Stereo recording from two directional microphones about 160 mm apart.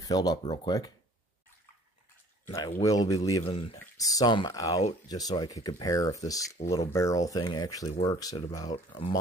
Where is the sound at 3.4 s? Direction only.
35° left (ahead or behind).